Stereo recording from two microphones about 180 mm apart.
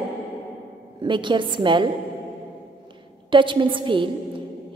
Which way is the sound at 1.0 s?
25° right (ahead or behind).